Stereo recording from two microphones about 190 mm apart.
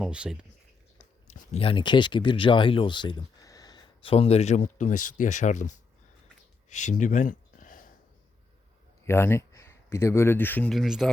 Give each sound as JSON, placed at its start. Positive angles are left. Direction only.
{"t": 0.0, "sound": "speech", "side_deg": -5}
{"t": 1.3, "sound": "speech", "side_deg": 35}
{"t": 6.7, "sound": "a sound", "side_deg": 40}
{"t": 9.0, "sound": "speech", "side_deg": 15}